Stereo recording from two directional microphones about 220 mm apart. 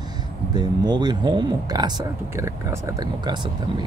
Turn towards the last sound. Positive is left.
turn(degrees=-20)  # may be behind; listen again after turning